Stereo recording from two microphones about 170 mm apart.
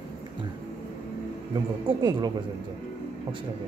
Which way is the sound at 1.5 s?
25° right (ahead or behind).